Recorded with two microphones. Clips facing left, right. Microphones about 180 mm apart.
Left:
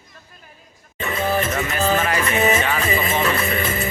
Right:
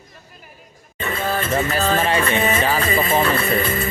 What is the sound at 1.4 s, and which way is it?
Music, 30° right (ahead or behind).